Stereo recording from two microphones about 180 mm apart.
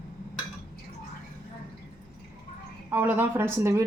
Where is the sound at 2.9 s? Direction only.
10° right (ahead or behind).